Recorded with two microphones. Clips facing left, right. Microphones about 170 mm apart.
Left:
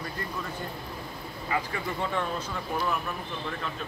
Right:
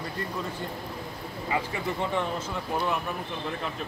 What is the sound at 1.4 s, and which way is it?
Speech, 20° right (ahead or behind).